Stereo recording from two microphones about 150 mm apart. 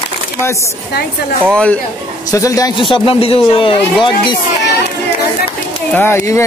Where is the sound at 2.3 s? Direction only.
20° left (ahead or behind).